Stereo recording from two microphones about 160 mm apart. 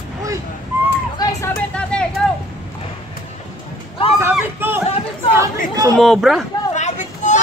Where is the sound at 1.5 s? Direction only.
5° left (ahead or behind).